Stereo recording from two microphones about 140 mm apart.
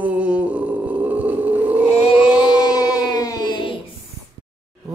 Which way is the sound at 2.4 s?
30° left (ahead or behind).